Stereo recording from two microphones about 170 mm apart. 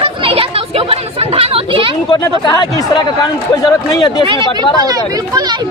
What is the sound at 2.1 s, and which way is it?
A man's voice, 25° left (ahead or behind).